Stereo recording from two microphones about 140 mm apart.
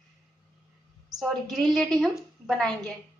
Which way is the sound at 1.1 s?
Centre (ahead or behind).